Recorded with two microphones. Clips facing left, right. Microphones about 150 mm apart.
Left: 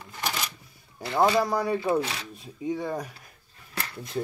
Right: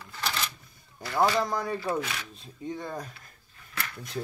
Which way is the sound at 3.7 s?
30° left (ahead or behind).